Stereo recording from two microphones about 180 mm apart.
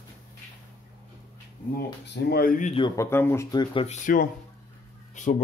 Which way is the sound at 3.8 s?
50° left (ahead or behind).